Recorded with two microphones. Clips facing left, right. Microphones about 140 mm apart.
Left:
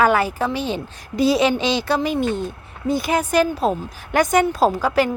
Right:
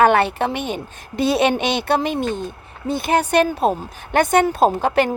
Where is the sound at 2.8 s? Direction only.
25° right (ahead or behind).